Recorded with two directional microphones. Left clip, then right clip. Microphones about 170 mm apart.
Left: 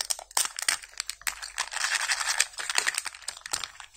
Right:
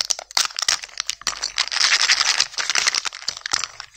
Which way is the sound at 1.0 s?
35° right (ahead or behind).